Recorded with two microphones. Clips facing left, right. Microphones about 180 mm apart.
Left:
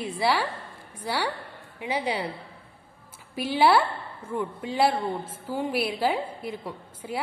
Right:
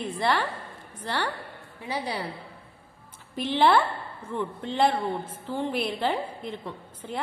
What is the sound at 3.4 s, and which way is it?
A woman's voice, 10° left (ahead or behind).